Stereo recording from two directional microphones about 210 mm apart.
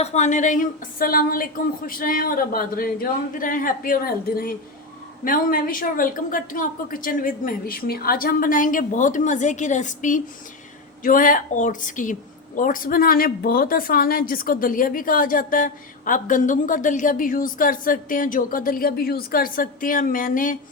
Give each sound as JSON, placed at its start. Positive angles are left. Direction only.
{"t": 0.0, "sound": "a woman's voice", "side_deg": 35}